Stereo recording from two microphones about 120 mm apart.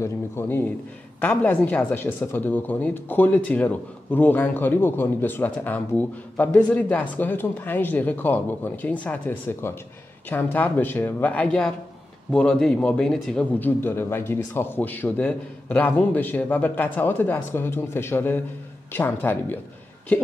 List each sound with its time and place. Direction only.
0.0 s a man's voice: 20° left (ahead or behind)
13.6 s speech: 15° left (ahead or behind)